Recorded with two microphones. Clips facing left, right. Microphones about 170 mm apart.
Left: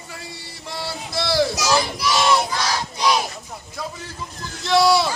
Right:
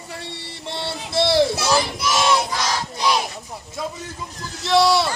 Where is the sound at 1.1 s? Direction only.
25° right (ahead or behind).